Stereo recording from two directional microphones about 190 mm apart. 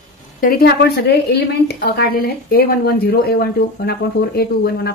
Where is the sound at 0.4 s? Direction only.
50° left (ahead or behind).